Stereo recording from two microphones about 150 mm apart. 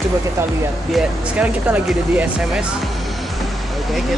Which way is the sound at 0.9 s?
10° right (ahead or behind).